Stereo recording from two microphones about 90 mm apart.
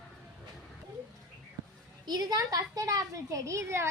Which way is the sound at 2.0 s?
50° right (ahead or behind).